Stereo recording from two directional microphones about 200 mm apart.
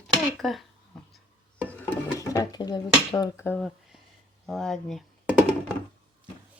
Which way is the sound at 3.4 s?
5° left (ahead or behind).